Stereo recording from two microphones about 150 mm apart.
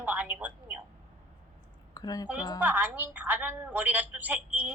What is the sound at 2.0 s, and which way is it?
Speech, 25° left (ahead or behind).